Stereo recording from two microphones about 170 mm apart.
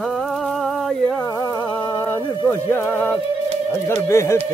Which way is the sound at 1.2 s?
20° left (ahead or behind).